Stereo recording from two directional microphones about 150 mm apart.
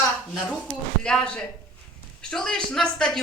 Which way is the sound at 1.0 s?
5° left (ahead or behind).